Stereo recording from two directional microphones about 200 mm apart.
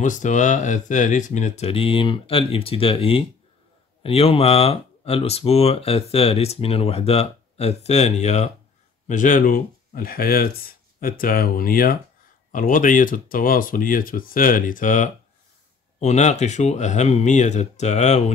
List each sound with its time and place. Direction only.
0.0 s speech: 40° left (ahead or behind)